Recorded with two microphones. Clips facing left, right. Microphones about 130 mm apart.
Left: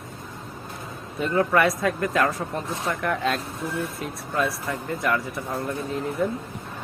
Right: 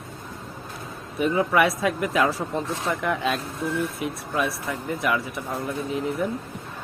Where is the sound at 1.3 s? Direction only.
5° right (ahead or behind).